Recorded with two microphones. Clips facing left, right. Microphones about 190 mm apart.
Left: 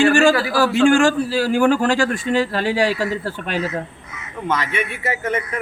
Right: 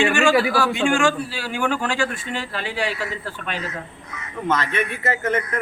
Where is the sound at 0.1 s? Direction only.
35° left (ahead or behind).